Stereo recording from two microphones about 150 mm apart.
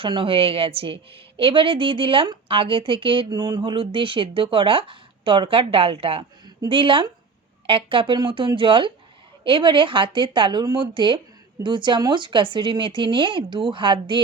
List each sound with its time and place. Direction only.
0.0 s speech: 35° right (ahead or behind)